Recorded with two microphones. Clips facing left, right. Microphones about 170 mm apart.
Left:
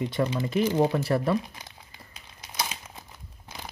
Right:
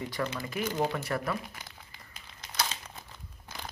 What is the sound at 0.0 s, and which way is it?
Speech, 20° left (ahead or behind).